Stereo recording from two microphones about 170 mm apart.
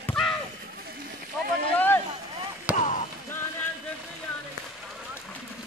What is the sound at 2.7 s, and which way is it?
Basketball bounce, 45° left (ahead or behind).